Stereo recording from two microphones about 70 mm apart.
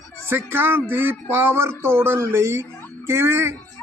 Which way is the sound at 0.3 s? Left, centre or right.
Right.